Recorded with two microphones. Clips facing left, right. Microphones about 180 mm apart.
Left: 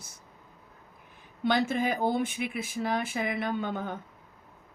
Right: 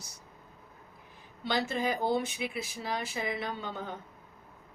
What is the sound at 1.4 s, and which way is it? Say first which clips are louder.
Speech: left 4 dB; 55° left (ahead or behind).